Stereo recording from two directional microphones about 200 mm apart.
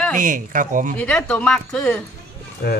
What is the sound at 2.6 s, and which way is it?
Speech, 50° left (ahead or behind).